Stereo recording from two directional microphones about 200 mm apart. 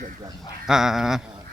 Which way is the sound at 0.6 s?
Centre (ahead or behind).